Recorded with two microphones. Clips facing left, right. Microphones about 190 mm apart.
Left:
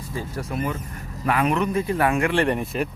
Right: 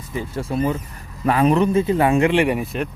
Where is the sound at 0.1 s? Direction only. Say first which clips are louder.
Right 5 dB; 25° right (ahead or behind).